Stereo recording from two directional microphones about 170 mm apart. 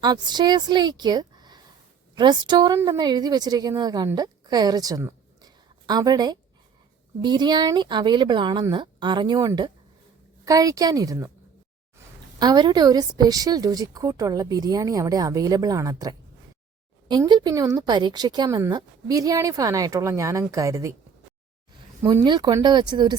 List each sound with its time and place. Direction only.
0.0 s a woman's voice: 25° right (ahead or behind)
12.4 s a woman's voice: 25° right (ahead or behind)
22.0 s a woman's voice: 30° right (ahead or behind)